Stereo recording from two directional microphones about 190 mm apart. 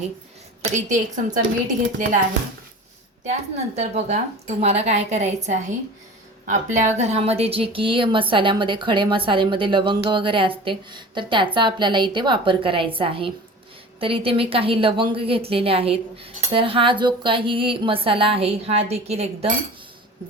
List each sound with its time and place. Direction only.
0.6 s a woman's voice: 40° right (ahead or behind)
3.8 s a woman's voice: 35° right (ahead or behind)
6.7 s a woman's voice: 35° right (ahead or behind)